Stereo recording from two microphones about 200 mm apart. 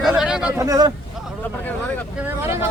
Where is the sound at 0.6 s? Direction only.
20° right (ahead or behind).